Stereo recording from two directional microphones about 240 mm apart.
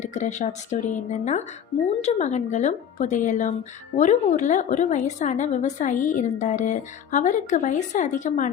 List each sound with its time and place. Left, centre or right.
0.0 s a woman's voice: left